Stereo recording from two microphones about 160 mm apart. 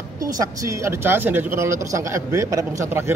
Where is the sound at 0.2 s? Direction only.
20° right (ahead or behind).